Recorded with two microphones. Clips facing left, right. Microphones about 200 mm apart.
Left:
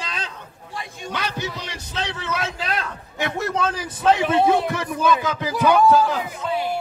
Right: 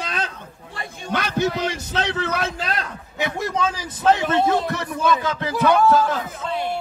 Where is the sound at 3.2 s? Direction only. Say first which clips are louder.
Left 1 dB; centre (ahead or behind).